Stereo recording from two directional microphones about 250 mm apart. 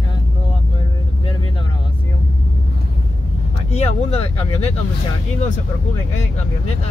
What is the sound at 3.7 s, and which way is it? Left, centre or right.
Vehicle, left.